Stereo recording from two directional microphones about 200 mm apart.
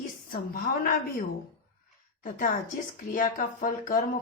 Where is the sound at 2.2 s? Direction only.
40° left (ahead or behind).